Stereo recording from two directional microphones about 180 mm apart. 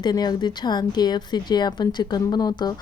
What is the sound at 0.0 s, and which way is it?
A woman's voice, 25° left (ahead or behind).